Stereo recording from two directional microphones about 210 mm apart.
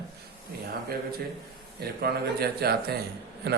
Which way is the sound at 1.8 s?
50° right (ahead or behind).